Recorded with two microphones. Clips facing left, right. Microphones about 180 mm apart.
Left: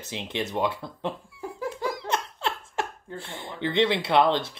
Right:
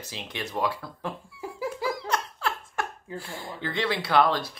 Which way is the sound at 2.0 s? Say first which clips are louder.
Left 1 dB; 25° left (ahead or behind).